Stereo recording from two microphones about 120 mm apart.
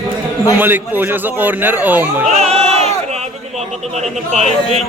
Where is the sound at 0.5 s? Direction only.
15° right (ahead or behind).